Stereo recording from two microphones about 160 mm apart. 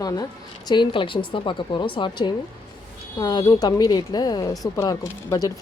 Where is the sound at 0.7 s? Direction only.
30° left (ahead or behind).